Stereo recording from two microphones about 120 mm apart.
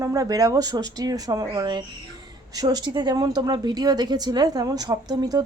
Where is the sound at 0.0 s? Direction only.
30° right (ahead or behind).